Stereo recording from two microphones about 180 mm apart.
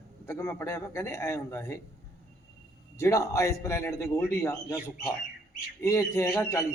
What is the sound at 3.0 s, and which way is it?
A woman's voice, 15° left (ahead or behind).